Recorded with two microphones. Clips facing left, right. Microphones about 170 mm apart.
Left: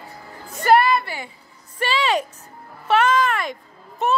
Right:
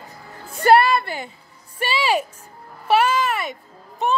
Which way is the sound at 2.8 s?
10° right (ahead or behind).